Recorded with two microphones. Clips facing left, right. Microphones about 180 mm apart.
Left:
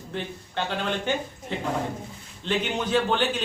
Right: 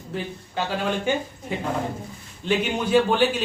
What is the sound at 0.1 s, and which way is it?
A man's voice, 5° right (ahead or behind).